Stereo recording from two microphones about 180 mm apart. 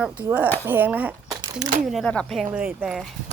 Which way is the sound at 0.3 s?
10° right (ahead or behind).